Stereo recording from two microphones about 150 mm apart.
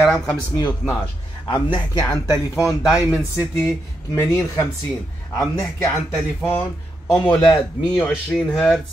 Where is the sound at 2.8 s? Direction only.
10° right (ahead or behind).